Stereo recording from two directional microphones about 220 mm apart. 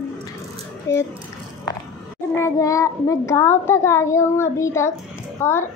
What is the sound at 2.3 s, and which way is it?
A child's voice, 15° left (ahead or behind).